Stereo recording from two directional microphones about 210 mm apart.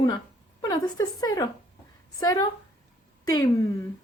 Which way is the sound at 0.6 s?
20° left (ahead or behind).